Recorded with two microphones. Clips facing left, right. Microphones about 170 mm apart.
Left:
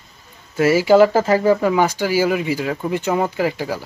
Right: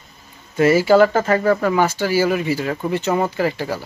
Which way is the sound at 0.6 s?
10° left (ahead or behind).